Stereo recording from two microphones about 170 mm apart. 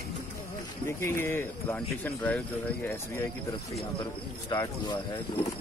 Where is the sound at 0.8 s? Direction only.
15° left (ahead or behind).